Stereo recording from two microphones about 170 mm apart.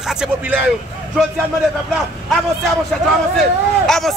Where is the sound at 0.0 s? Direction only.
5° right (ahead or behind).